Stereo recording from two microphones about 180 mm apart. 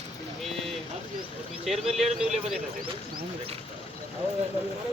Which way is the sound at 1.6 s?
Centre (ahead or behind).